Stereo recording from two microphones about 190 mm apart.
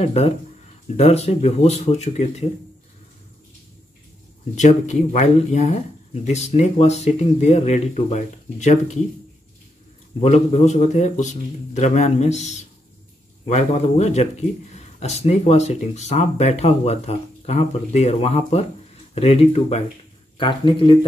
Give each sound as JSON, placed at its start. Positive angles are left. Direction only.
{"t": 0.0, "sound": "speech", "side_deg": 35}
{"t": 4.6, "sound": "speech", "side_deg": 40}
{"t": 10.2, "sound": "speech", "side_deg": 35}